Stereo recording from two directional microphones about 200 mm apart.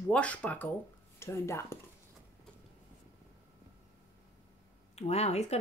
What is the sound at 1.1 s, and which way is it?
Speech, 15° left (ahead or behind).